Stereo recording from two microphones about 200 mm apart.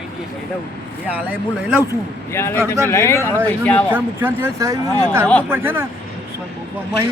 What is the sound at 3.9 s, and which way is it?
Speech, 10° right (ahead or behind).